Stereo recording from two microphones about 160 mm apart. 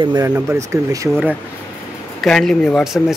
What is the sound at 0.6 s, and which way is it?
Speech, 20° right (ahead or behind).